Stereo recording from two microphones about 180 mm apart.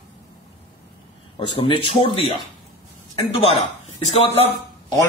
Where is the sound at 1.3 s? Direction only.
30° left (ahead or behind).